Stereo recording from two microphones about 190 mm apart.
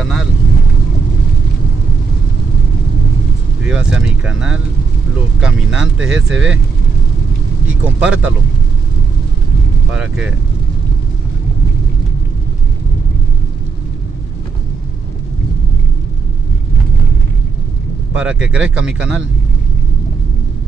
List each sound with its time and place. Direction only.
3.6 s speech: 5° right (ahead or behind)
8.0 s speech: 5° right (ahead or behind)
9.9 s speech: 5° right (ahead or behind)
18.1 s speech: 5° right (ahead or behind)